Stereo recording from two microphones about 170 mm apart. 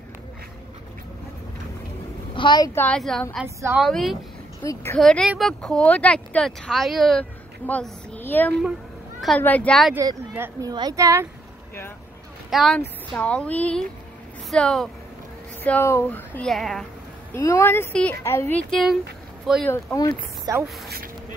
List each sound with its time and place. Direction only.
2.3 s a woman's voice: 25° left (ahead or behind)
2.7 s speech: 10° left (ahead or behind)
3.4 s speech: 15° right (ahead or behind)
3.8 s speech: centre (ahead or behind)
4.6 s speech: 15° left (ahead or behind)
5.0 s speech: 5° left (ahead or behind)
9.9 s speech: 15° right (ahead or behind)
12.4 s speech: centre (ahead or behind)
17.3 s speech: 15° left (ahead or behind); by 19.7 s centre (ahead or behind)
19.7 s speech: 15° left (ahead or behind)
20.5 s speech: 20° right (ahead or behind)